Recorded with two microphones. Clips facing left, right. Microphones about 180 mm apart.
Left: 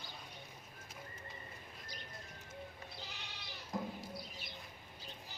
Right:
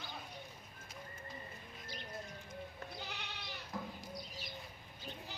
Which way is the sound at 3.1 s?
65° right (ahead or behind).